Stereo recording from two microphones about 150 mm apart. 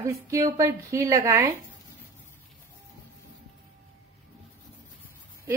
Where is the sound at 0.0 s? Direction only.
20° right (ahead or behind).